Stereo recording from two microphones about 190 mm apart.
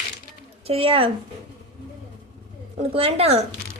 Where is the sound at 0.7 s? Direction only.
30° right (ahead or behind).